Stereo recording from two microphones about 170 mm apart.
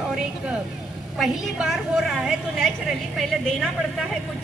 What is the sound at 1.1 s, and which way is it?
A woman's voice, centre (ahead or behind).